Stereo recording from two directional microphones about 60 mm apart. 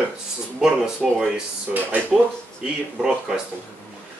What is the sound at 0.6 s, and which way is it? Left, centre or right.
Speech, centre.